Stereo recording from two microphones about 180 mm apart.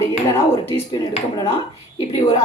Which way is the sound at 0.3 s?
15° left (ahead or behind).